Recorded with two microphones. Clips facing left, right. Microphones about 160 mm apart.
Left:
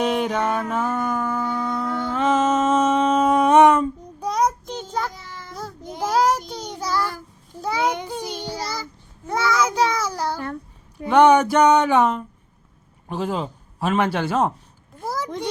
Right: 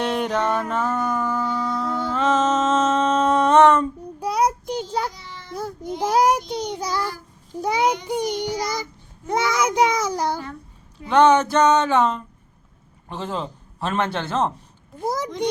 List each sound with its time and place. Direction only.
0.0 s music: 5° left (ahead or behind)
0.7 s a sound: 10° left (ahead or behind)
2.1 s a sound: 10° left (ahead or behind)
4.2 s child singing: 10° right (ahead or behind)
5.1 s child singing: 45° left (ahead or behind)
5.5 s child singing: 15° right (ahead or behind)
11.1 s music: 15° left (ahead or behind)
13.1 s a man's voice: 10° left (ahead or behind)
14.9 s a sound: 20° right (ahead or behind)